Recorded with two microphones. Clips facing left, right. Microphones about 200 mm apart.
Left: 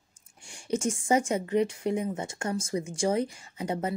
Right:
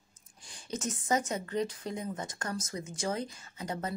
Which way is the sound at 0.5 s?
30° left (ahead or behind).